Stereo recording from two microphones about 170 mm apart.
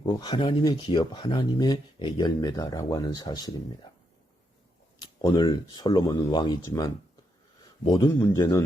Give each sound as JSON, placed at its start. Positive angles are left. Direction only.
{"t": 0.0, "sound": "speech", "side_deg": 25}
{"t": 5.2, "sound": "speech", "side_deg": 25}